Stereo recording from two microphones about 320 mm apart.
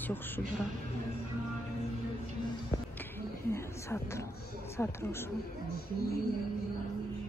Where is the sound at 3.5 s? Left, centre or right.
Centre.